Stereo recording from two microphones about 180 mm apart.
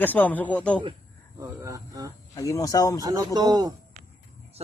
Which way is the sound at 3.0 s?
20° right (ahead or behind).